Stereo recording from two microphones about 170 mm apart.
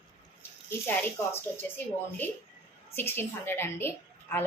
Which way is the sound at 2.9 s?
15° left (ahead or behind).